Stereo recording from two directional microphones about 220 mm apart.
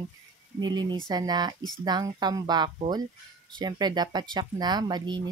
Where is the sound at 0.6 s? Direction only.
20° right (ahead or behind).